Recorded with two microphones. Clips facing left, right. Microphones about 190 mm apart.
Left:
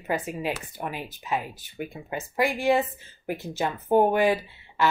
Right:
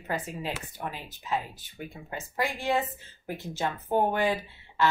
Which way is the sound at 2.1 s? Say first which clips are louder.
Left 6 dB; 10° left (ahead or behind).